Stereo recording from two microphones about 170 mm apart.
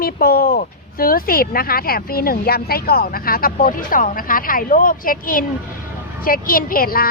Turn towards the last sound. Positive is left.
turn(degrees=60)  # may be behind; listen again after turning